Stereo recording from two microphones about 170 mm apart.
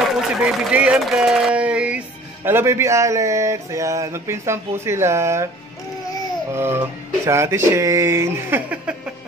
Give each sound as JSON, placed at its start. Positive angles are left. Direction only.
{"t": 0.4, "sound": "speech", "side_deg": -5}
{"t": 6.5, "sound": "speech", "side_deg": -15}